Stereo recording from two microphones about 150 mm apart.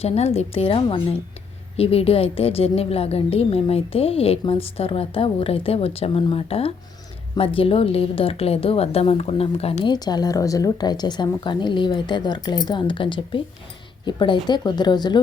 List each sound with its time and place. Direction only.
0.0 s a woman's voice: 45° left (ahead or behind)
9.9 s a woman's voice: 25° left (ahead or behind)